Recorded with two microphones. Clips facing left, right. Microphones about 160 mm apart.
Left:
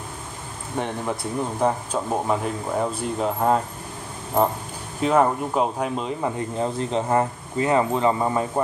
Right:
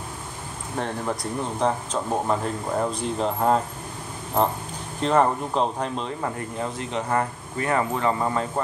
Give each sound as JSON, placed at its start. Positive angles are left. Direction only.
{"t": 0.7, "sound": "speech", "side_deg": 5}
{"t": 5.0, "sound": "speech", "side_deg": 5}
{"t": 6.6, "sound": "speech", "side_deg": 35}